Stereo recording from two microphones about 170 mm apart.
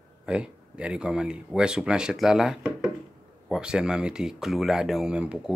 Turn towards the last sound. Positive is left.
turn(degrees=-5)  # may be behind; listen again after turning